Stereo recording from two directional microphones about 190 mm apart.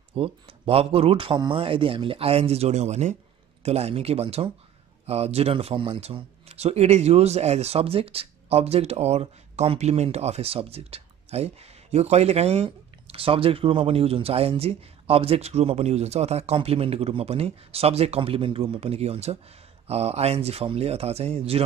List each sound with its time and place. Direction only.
0.1 s speech: 30° right (ahead or behind)